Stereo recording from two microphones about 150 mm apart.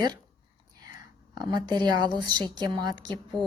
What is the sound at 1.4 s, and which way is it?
A woman's voice, 30° right (ahead or behind).